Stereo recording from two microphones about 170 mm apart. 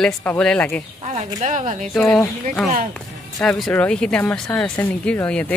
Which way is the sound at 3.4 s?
5° left (ahead or behind).